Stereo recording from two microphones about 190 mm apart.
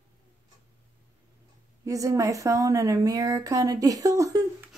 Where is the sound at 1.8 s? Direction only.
15° right (ahead or behind).